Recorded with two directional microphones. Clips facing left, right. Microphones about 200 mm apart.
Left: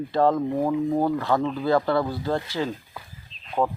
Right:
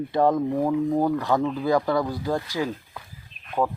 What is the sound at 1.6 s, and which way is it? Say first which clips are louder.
Speech: left 1 dB; 15° right (ahead or behind).